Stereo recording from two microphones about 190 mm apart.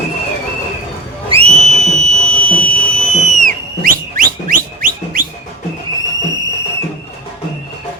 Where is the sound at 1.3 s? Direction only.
30° right (ahead or behind); by 5.3 s 50° right (ahead or behind).